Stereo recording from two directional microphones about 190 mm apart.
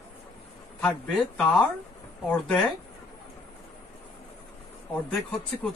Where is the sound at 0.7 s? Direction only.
5° left (ahead or behind).